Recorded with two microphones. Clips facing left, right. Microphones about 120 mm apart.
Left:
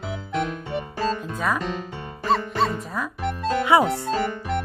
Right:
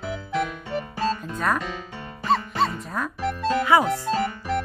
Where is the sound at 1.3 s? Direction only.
5° left (ahead or behind).